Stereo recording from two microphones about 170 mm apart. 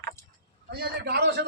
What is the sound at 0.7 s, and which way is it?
Speech, 70° right (ahead or behind).